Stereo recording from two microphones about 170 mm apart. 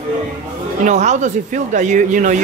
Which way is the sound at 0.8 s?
45° right (ahead or behind).